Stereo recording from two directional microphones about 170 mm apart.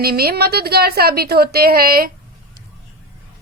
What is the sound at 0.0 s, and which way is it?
Speech, 65° right (ahead or behind).